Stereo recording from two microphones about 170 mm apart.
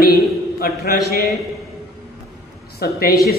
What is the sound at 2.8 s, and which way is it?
Speech, 65° left (ahead or behind).